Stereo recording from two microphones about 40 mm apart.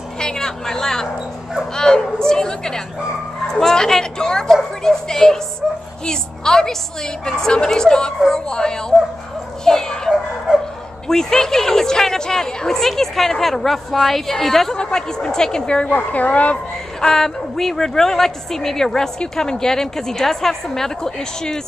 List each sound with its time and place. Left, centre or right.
0.2 s a woman's voice: centre
9.7 s dog: centre
10.5 s bow-wow: centre
11.1 s a woman's voice: centre
14.8 s a woman's voice: centre
15.9 s speech: left
17.0 s a woman's voice: centre